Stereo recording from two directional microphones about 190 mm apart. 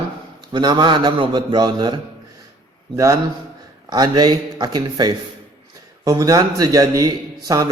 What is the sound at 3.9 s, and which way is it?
A man's voice, 20° right (ahead or behind).